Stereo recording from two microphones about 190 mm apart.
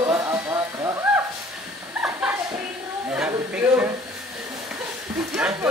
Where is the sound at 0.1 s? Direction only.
15° right (ahead or behind).